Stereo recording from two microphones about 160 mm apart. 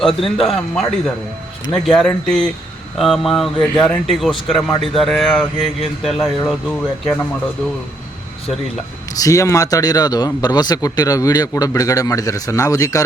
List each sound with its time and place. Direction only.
0.0 s speech: centre (ahead or behind)
9.2 s speech: 20° left (ahead or behind)